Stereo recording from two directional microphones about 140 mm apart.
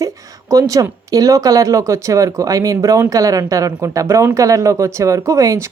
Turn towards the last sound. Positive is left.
turn(degrees=-25)  # may be behind; listen again after turning